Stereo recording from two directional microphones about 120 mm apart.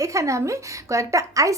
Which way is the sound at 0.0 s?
25° right (ahead or behind).